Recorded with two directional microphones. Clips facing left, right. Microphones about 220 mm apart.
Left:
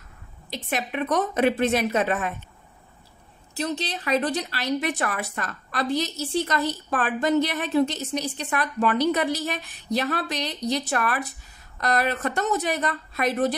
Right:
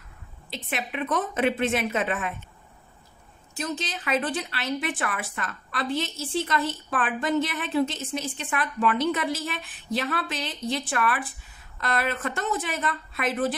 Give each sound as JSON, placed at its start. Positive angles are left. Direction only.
{"t": 0.5, "sound": "a woman's voice", "side_deg": 40}
{"t": 3.5, "sound": "a woman's voice", "side_deg": 35}